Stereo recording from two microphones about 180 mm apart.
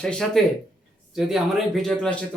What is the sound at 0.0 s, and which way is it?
Speech, 5° left (ahead or behind).